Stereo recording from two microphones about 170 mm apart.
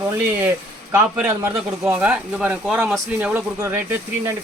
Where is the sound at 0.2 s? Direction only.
10° right (ahead or behind).